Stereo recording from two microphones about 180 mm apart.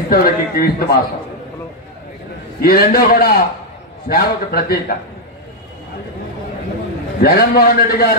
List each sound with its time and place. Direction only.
0.1 s a man's voice: 55° left (ahead or behind)
2.6 s a man's voice: 55° left (ahead or behind)
7.2 s a man's voice: 60° left (ahead or behind)